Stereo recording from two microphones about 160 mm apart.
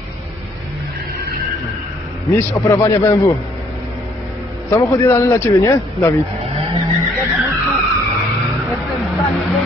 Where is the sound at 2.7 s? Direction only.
15° left (ahead or behind).